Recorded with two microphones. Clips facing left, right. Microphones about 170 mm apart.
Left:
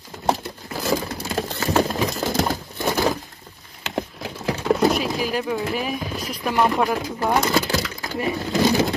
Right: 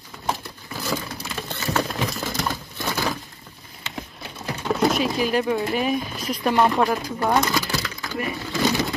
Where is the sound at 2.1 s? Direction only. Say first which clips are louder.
Left 5 dB; 45° left (ahead or behind).